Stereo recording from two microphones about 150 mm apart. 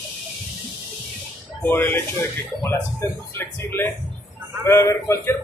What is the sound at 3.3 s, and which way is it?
Speech, 15° left (ahead or behind).